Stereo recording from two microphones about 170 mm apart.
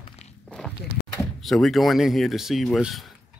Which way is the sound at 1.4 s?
Centre (ahead or behind).